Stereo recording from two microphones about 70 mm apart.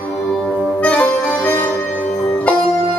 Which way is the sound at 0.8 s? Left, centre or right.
Centre.